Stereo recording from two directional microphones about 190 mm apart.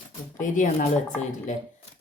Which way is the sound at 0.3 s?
40° left (ahead or behind).